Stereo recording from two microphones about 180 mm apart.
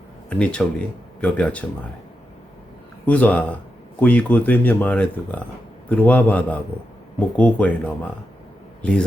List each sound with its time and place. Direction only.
0.3 s speech: 5° left (ahead or behind)
3.1 s a man's voice: 10° left (ahead or behind)